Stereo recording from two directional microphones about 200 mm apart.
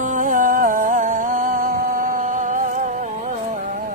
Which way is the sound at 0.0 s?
40° right (ahead or behind).